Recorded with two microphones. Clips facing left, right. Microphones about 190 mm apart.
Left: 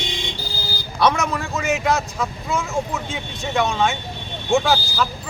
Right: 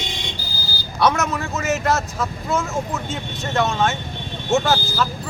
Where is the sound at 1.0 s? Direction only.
5° right (ahead or behind).